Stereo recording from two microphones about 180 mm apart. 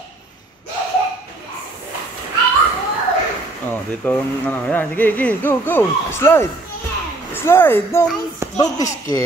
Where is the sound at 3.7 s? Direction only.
10° left (ahead or behind).